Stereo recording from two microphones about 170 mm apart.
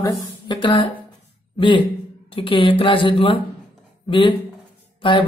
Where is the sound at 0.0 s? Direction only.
20° left (ahead or behind).